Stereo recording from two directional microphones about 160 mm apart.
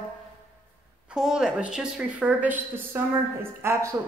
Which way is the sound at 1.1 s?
5° right (ahead or behind).